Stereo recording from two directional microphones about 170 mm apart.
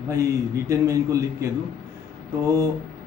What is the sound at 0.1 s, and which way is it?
A man's voice, 15° right (ahead or behind).